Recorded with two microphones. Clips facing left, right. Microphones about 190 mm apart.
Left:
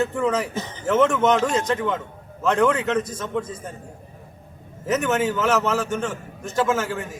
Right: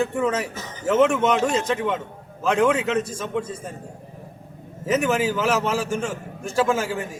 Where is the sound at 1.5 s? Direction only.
5° right (ahead or behind).